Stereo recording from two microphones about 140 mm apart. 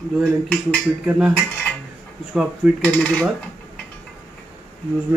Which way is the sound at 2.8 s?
10° left (ahead or behind).